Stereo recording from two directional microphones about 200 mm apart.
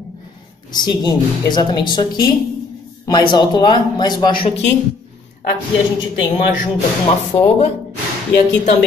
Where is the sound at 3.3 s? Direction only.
20° left (ahead or behind).